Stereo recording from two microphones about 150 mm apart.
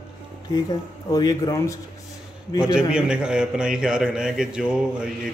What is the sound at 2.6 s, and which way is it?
A man's voice, 5° right (ahead or behind).